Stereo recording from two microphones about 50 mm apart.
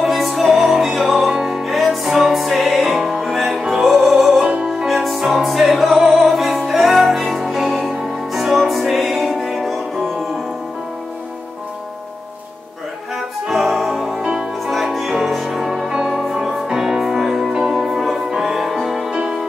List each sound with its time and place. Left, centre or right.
0.0 s music: centre
4.4 s music: centre
4.8 s music: centre
13.5 s music: centre
19.0 s music: centre